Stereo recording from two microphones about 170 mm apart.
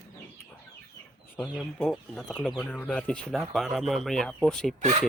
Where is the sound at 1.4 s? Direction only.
Centre (ahead or behind).